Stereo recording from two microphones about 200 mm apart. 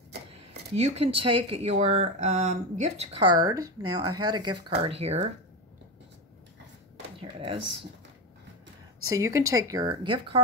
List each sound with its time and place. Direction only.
0.7 s speech: 30° right (ahead or behind)
3.3 s speech: 20° right (ahead or behind)
7.2 s a sound: 25° right (ahead or behind)
9.0 s a woman's voice: 15° right (ahead or behind)